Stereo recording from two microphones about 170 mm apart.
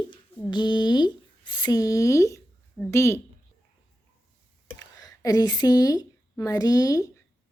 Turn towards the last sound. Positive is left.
turn(degrees=20)  # may be behind; listen again after turning